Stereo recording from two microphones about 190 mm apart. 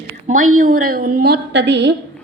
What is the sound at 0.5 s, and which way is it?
A woman's voice, 45° right (ahead or behind).